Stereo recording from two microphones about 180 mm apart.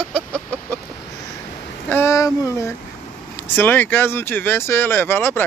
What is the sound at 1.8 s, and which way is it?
Speech, 15° left (ahead or behind).